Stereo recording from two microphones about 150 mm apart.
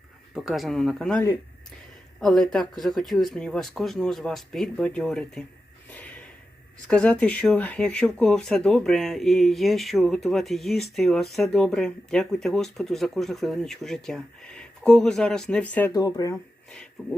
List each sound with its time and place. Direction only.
0.3 s speech: centre (ahead or behind)
2.2 s speech: 5° left (ahead or behind)
5.9 s a sound: 10° left (ahead or behind)
6.8 s speech: 5° left (ahead or behind)
15.9 s speech: 25° left (ahead or behind)